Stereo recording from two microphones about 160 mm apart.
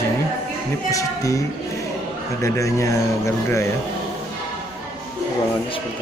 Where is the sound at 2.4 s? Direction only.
20° left (ahead or behind).